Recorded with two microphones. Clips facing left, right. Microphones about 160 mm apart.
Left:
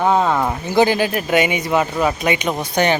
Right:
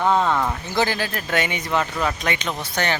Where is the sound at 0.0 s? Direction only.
15° left (ahead or behind).